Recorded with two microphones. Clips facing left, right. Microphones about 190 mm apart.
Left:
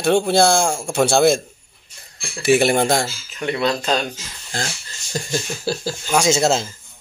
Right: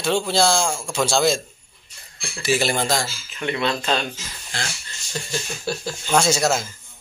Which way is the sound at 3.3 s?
35° left (ahead or behind).